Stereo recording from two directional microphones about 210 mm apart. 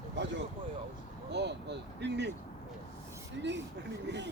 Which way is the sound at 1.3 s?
55° right (ahead or behind).